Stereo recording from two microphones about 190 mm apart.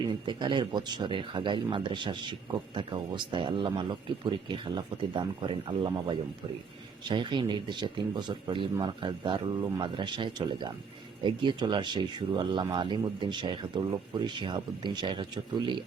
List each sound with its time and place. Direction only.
0.1 s speech: 25° right (ahead or behind)